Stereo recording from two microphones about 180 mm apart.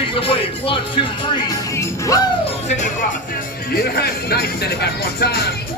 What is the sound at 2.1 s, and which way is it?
Speech, 20° left (ahead or behind).